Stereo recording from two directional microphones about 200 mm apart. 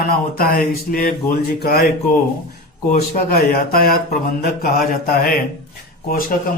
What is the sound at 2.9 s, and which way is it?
A man's voice, 40° left (ahead or behind).